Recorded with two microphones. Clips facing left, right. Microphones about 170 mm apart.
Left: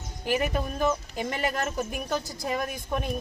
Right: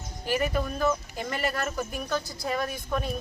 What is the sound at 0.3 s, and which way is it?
Speech, 20° left (ahead or behind).